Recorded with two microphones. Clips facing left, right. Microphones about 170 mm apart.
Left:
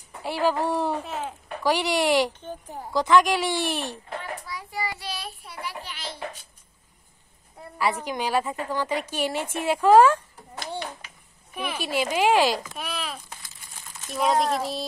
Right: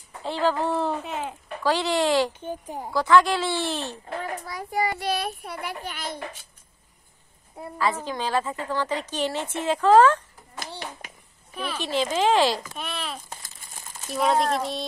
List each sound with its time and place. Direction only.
0.2 s a woman's voice: 10° left (ahead or behind)
2.4 s a woman's voice: 15° right (ahead or behind)
2.9 s a woman's voice: 20° left (ahead or behind)
4.2 s a child's voice: 45° right (ahead or behind)
7.8 s a woman's voice: 15° left (ahead or behind)
11.5 s a woman's voice: 10° left (ahead or behind)